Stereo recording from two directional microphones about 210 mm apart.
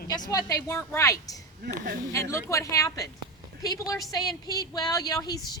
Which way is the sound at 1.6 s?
45° right (ahead or behind).